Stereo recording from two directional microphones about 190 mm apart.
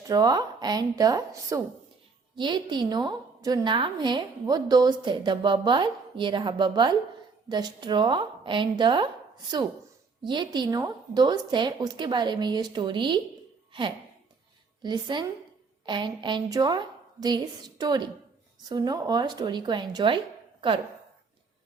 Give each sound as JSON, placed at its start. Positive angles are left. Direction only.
{"t": 0.1, "sound": "a woman's voice", "side_deg": -20}
{"t": 10.2, "sound": "a woman's voice", "side_deg": -25}
{"t": 14.8, "sound": "a woman's voice", "side_deg": -25}